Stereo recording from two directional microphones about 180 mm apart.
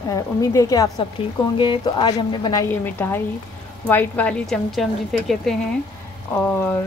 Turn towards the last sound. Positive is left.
turn(degrees=10)  # may be behind; listen again after turning